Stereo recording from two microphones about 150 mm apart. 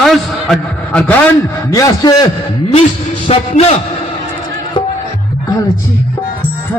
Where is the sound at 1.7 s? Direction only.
20° left (ahead or behind).